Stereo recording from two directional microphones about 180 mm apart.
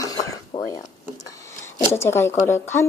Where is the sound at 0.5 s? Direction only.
40° left (ahead or behind).